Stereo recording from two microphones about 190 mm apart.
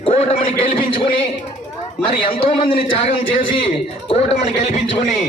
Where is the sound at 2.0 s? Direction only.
30° left (ahead or behind).